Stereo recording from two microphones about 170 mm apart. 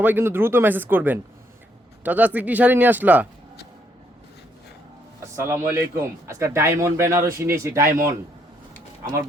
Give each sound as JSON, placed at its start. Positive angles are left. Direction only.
{"t": 0.0, "sound": "a man's voice", "side_deg": -10}
{"t": 5.4, "sound": "a man's voice", "side_deg": -15}